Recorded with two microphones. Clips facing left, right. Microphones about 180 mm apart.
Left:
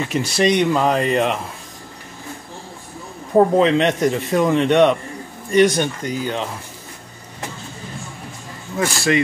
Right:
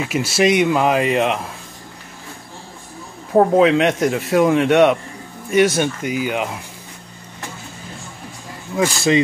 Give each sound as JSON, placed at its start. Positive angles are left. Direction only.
{"t": 0.0, "sound": "a man's voice", "side_deg": -5}
{"t": 3.3, "sound": "a man's voice", "side_deg": -5}
{"t": 8.7, "sound": "speech", "side_deg": -20}